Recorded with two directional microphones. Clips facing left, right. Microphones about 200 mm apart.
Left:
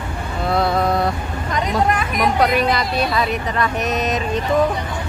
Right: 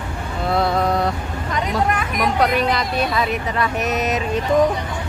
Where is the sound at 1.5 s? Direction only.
35° left (ahead or behind).